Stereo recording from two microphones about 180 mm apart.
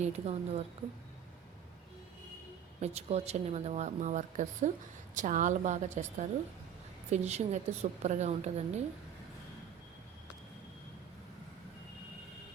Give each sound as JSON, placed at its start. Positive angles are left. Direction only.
{"t": 0.0, "sound": "speech", "side_deg": -35}
{"t": 2.8, "sound": "a woman's voice", "side_deg": -35}